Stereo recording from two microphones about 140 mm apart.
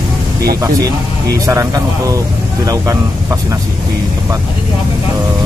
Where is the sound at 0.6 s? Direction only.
25° right (ahead or behind).